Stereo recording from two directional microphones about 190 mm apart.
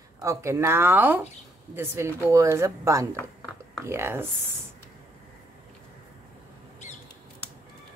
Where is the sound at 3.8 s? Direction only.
15° right (ahead or behind).